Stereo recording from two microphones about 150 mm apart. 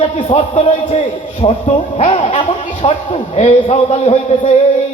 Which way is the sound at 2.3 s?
35° left (ahead or behind).